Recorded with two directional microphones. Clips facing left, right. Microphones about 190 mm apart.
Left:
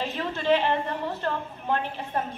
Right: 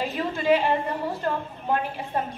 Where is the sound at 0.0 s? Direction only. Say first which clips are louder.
Right 2 dB; 10° right (ahead or behind).